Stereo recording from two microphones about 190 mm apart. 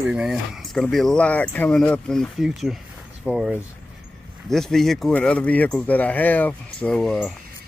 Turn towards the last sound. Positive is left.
turn(degrees=5)  # may be behind; listen again after turning